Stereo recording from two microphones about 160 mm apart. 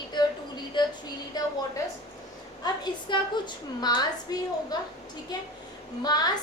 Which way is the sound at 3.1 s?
25° left (ahead or behind).